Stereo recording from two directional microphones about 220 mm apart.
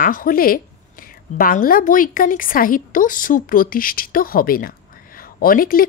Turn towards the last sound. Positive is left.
turn(degrees=40)  # may be behind; listen again after turning